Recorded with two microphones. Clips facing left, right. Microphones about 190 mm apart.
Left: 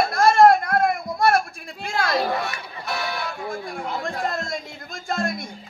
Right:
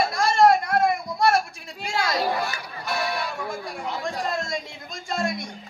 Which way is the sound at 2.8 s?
Centre (ahead or behind).